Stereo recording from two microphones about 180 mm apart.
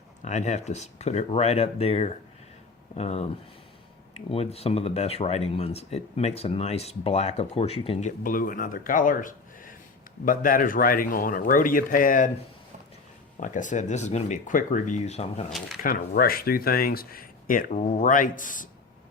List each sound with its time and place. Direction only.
0.2 s speech: 40° left (ahead or behind)
4.3 s speech: 35° left (ahead or behind)
8.2 s speech: 50° left (ahead or behind)
13.3 s speech: 45° left (ahead or behind)
15.4 s speech: centre (ahead or behind)
15.8 s speech: 55° left (ahead or behind)